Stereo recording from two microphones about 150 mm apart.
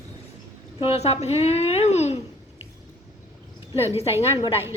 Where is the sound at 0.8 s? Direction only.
45° left (ahead or behind).